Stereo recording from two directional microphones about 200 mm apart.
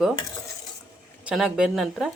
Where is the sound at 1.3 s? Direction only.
5° right (ahead or behind).